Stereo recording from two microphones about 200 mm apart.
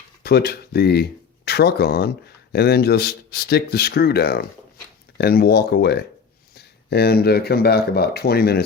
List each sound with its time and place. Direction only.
0.2 s speech: 55° left (ahead or behind)